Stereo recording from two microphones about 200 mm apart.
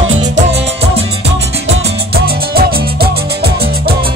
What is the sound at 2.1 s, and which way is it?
Music, 50° right (ahead or behind).